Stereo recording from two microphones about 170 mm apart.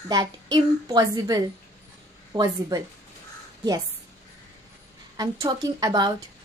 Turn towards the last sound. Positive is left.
turn(degrees=-25)  # may be behind; listen again after turning